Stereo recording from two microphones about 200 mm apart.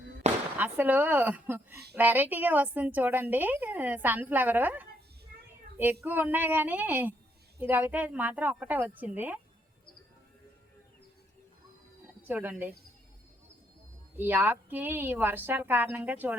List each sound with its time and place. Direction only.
0.5 s a woman's voice: 10° right (ahead or behind)
12.2 s a woman's voice: 10° right (ahead or behind)
14.2 s a woman's voice: 10° right (ahead or behind)